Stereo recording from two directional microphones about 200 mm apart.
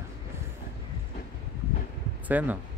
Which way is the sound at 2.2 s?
10° right (ahead or behind).